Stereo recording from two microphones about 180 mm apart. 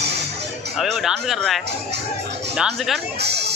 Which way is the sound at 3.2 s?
65° right (ahead or behind).